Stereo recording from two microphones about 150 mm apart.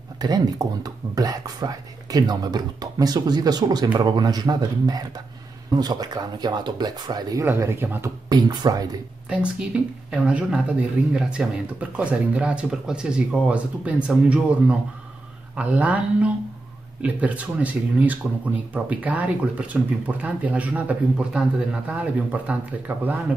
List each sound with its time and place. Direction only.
0.2 s speech: 25° right (ahead or behind)
8.3 s speech: 25° right (ahead or behind)
9.3 s speech: 10° right (ahead or behind)